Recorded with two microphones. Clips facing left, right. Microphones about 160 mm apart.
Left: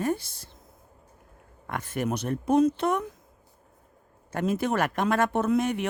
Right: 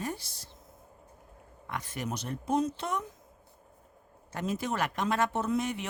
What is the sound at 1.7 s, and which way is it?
Speech, 55° left (ahead or behind).